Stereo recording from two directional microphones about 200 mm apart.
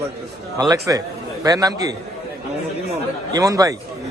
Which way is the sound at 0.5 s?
20° right (ahead or behind).